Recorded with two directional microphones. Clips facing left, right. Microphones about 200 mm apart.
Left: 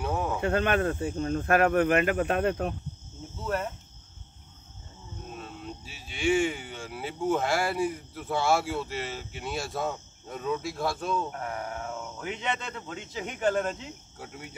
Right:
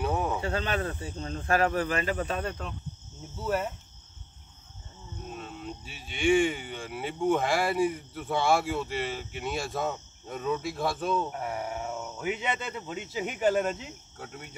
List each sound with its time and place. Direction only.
0.0 s cricket: centre (ahead or behind)
0.4 s speech: 55° left (ahead or behind)
3.3 s speech: 5° right (ahead or behind)
5.3 s speech: centre (ahead or behind)
14.1 s speech: 5° left (ahead or behind)